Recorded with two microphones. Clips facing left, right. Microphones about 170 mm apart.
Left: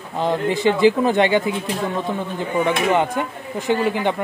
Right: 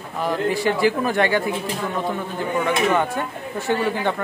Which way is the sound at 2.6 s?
20° left (ahead or behind).